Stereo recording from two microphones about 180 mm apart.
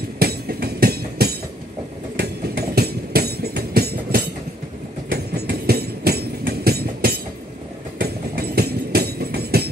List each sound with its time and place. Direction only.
0.2 s train: 60° right (ahead or behind)